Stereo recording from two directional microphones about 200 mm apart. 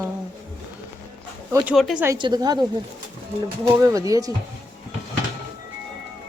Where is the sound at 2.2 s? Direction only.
20° right (ahead or behind).